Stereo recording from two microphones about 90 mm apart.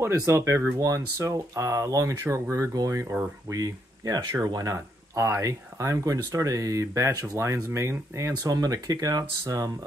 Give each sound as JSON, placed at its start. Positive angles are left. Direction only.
{"t": 0.2, "sound": "speech", "side_deg": -30}
{"t": 4.7, "sound": "speech", "side_deg": -30}